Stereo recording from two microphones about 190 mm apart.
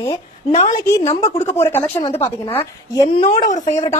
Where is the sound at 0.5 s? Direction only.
40° left (ahead or behind).